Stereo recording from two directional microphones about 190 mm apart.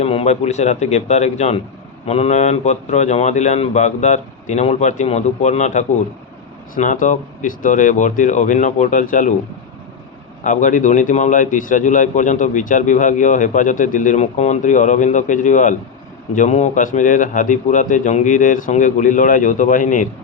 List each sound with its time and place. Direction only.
0.0 s a man's voice: 35° left (ahead or behind)
10.4 s a man's voice: 45° left (ahead or behind)